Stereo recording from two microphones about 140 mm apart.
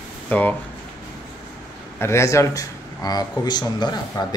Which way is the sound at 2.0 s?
20° left (ahead or behind).